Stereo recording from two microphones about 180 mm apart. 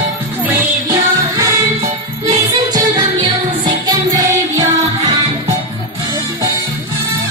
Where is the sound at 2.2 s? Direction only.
20° right (ahead or behind).